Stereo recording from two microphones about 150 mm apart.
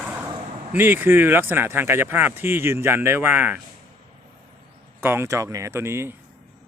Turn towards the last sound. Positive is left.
turn(degrees=-15)  # may be behind; listen again after turning